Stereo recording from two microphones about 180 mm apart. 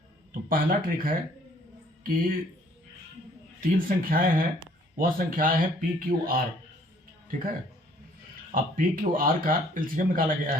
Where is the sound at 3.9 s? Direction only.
50° right (ahead or behind).